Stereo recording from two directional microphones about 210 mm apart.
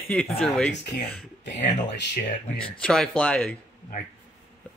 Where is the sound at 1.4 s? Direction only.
55° left (ahead or behind).